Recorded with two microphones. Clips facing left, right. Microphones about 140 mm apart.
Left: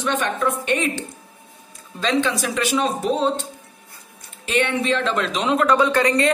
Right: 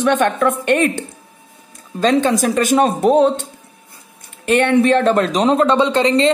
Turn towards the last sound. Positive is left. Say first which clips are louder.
# right 4 dB
turn(degrees=-25)  # may be behind; listen again after turning